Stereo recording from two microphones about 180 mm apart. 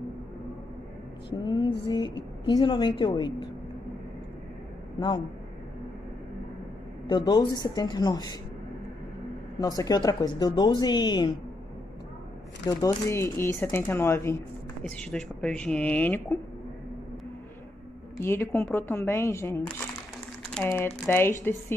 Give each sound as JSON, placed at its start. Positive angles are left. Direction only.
{"t": 1.3, "sound": "a woman's voice", "side_deg": 25}
{"t": 7.1, "sound": "a woman's voice", "side_deg": 25}
{"t": 9.6, "sound": "a woman's voice", "side_deg": 20}
{"t": 12.6, "sound": "speech", "side_deg": 15}
{"t": 18.2, "sound": "speech", "side_deg": 15}